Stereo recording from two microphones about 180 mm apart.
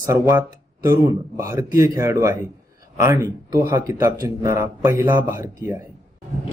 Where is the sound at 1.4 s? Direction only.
15° right (ahead or behind).